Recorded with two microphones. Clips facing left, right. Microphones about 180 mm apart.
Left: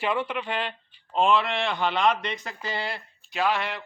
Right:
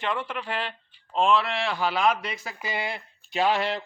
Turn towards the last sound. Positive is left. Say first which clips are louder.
# right 2 dB
turn(degrees=-30)  # may be behind; listen again after turning